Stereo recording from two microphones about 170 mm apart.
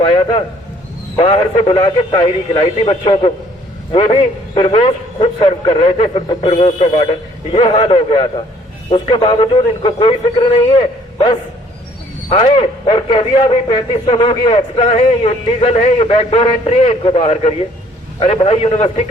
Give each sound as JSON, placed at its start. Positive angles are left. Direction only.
{"t": 0.0, "sound": "a man's voice", "side_deg": 30}